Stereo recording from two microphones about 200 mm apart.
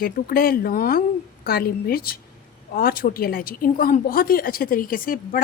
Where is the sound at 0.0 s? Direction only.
50° left (ahead or behind).